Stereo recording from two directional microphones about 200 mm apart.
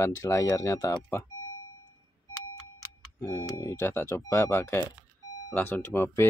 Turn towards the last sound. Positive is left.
turn(degrees=10)  # may be behind; listen again after turning